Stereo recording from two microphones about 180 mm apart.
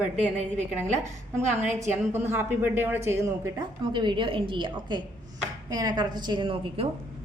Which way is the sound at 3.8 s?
25° right (ahead or behind).